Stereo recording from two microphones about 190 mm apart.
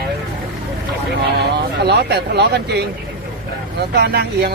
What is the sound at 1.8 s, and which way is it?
A man's voice, 60° right (ahead or behind).